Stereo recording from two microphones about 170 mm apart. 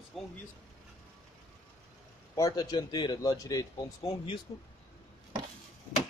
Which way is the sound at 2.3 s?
20° left (ahead or behind).